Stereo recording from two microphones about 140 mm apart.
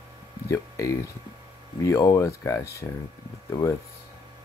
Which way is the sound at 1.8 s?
25° left (ahead or behind).